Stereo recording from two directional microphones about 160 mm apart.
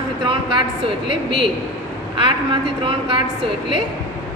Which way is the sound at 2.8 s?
30° right (ahead or behind).